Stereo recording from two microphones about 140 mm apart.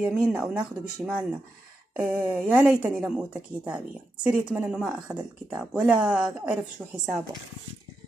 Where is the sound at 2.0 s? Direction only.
15° right (ahead or behind).